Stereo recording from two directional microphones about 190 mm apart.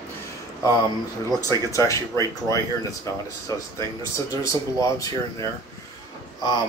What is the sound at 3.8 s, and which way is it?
Speech, 15° left (ahead or behind).